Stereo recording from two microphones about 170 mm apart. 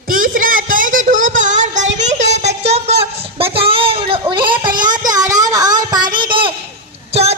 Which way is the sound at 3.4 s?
35° right (ahead or behind).